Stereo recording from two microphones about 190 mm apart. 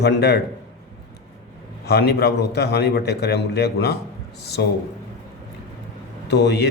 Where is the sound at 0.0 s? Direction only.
60° left (ahead or behind).